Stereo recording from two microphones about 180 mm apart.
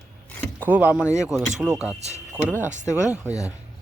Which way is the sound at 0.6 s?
10° right (ahead or behind).